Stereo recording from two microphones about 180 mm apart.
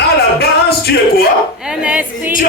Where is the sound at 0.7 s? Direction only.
65° left (ahead or behind).